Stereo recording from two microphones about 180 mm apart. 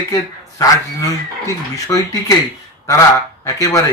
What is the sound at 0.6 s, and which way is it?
Speech, 20° left (ahead or behind).